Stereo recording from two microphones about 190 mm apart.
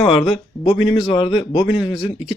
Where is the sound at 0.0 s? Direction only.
30° left (ahead or behind).